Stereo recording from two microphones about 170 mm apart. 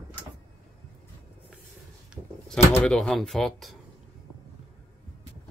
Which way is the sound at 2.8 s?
5° left (ahead or behind).